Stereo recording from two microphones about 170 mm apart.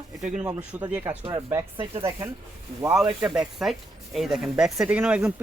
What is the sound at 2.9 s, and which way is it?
Speech, 5° right (ahead or behind).